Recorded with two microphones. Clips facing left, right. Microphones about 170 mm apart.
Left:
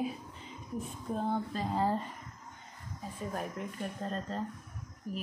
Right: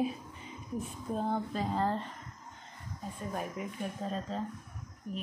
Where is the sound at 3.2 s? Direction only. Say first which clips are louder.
Even; centre (ahead or behind).